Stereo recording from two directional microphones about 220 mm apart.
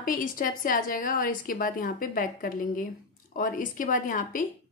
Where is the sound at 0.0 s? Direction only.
40° left (ahead or behind).